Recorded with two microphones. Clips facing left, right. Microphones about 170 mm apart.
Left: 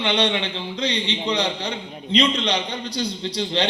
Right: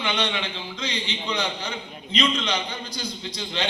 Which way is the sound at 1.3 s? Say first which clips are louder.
Left 4 dB; 30° left (ahead or behind).